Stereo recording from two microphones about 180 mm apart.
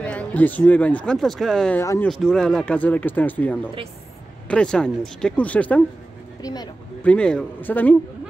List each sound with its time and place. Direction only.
0.0 s speech: 5° left (ahead or behind)
1.8 s speech: 15° left (ahead or behind)
2.0 s speech: centre (ahead or behind)
6.4 s speech: 20° left (ahead or behind)
7.0 s speech: 5° left (ahead or behind)